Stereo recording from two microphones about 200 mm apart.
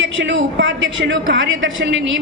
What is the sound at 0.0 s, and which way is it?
A woman's voice, 70° right (ahead or behind).